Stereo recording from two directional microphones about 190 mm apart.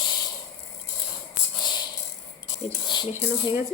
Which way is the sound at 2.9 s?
25° left (ahead or behind).